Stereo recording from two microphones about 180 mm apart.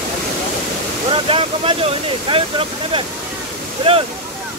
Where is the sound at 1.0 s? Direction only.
30° right (ahead or behind).